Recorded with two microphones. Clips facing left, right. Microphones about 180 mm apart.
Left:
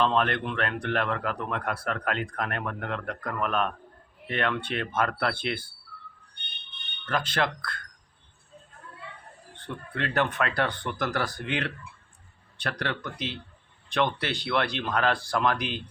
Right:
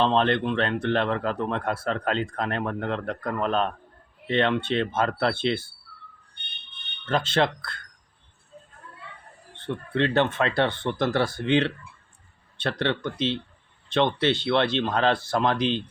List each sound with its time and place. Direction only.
0.0 s speech: 25° right (ahead or behind)
7.0 s speech: 25° right (ahead or behind)
9.6 s speech: 25° right (ahead or behind)